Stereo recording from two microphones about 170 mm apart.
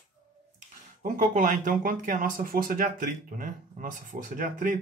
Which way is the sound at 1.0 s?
50° right (ahead or behind).